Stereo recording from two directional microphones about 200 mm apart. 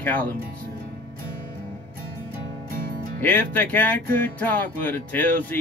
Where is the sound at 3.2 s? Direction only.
10° left (ahead or behind).